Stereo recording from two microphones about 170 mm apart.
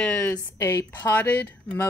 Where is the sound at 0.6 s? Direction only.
20° left (ahead or behind).